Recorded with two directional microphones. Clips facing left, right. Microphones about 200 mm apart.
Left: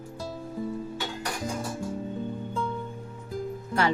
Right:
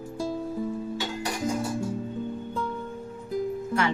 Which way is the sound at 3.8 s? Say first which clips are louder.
Left 2 dB; 35° left (ahead or behind).